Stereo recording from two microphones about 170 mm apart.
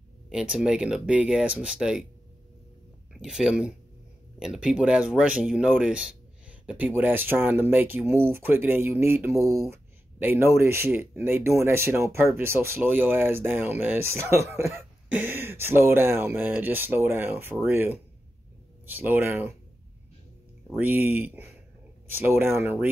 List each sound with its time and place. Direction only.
0.3 s speech: 5° right (ahead or behind)
3.2 s speech: 5° right (ahead or behind)
20.7 s speech: 10° right (ahead or behind)